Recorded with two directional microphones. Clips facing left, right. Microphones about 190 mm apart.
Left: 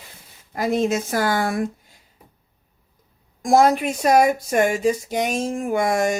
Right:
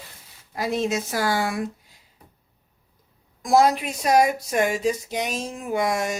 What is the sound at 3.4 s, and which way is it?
Speech, 50° left (ahead or behind).